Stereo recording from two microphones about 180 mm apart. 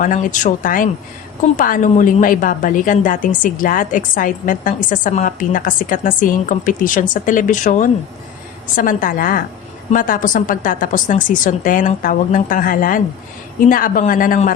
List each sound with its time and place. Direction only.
0.0 s a woman's voice: 45° left (ahead or behind)